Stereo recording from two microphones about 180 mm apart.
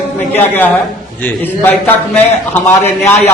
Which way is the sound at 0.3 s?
10° left (ahead or behind).